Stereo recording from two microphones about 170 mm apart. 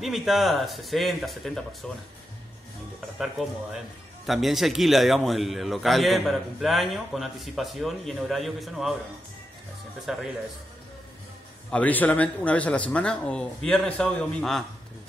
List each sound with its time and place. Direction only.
0.0 s a man's voice: centre (ahead or behind)
4.3 s a man's voice: centre (ahead or behind)
10.1 s a man's voice: centre (ahead or behind)
11.7 s a man's voice: 10° left (ahead or behind)